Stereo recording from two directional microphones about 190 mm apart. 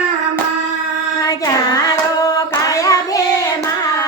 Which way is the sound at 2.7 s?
15° left (ahead or behind).